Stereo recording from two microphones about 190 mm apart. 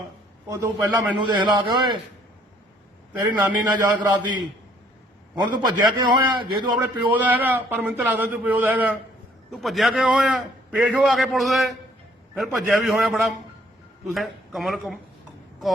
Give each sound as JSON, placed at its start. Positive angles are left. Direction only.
{"t": 0.5, "sound": "a man's voice", "side_deg": -15}
{"t": 3.1, "sound": "a man's voice", "side_deg": -10}
{"t": 3.8, "sound": "a man's voice", "side_deg": -20}
{"t": 5.5, "sound": "a man's voice", "side_deg": -25}
{"t": 6.7, "sound": "a man's voice", "side_deg": -10}